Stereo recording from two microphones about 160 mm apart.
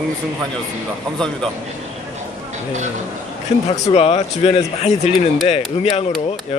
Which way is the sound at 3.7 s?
40° left (ahead or behind).